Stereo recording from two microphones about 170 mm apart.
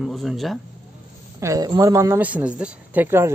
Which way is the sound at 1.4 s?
20° right (ahead or behind).